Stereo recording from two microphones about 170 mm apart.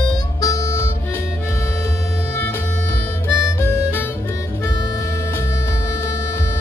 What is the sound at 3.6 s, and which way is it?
Harmonica, 15° left (ahead or behind).